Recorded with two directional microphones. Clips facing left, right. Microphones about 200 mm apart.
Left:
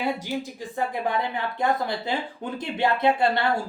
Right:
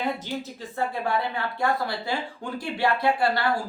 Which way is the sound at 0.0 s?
10° left (ahead or behind).